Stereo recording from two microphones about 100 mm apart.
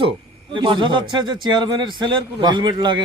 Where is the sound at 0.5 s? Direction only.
55° right (ahead or behind).